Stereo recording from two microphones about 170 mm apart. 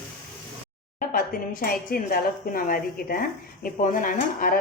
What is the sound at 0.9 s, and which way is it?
Speech, 50° left (ahead or behind).